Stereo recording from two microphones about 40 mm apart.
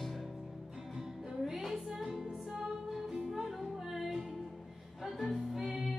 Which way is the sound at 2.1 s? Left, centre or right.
Centre.